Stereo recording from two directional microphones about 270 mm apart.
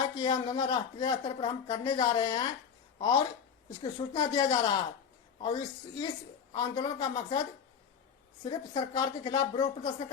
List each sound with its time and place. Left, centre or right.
0.0 s speech: centre
3.9 s speech: centre
8.4 s speech: centre